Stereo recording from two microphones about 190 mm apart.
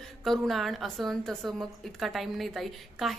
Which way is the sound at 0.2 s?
Centre (ahead or behind).